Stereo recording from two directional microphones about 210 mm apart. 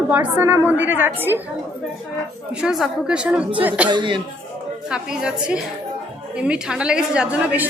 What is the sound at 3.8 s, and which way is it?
Speech, 20° right (ahead or behind).